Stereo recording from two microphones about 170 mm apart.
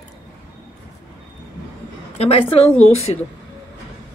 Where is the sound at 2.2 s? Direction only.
35° left (ahead or behind).